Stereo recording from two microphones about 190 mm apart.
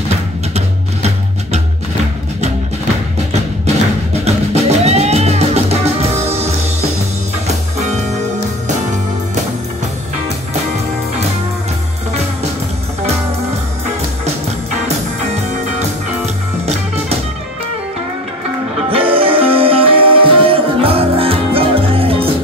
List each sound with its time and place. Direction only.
4.2 s music: 35° right (ahead or behind)
18.9 s music: 30° right (ahead or behind)